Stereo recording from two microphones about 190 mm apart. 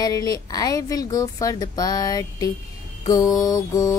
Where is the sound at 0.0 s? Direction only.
20° left (ahead or behind).